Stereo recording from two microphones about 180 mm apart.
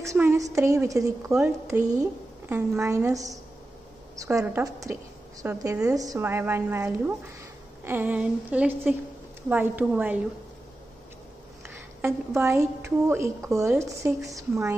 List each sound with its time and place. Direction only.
0.1 s a woman's voice: 15° right (ahead or behind)
11.6 s a woman's voice: 15° right (ahead or behind)